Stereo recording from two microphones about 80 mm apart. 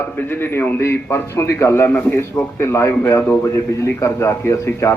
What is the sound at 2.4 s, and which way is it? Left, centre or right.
A man's voice, left.